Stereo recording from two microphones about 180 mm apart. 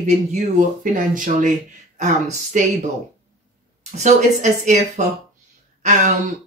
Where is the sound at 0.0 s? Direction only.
40° right (ahead or behind).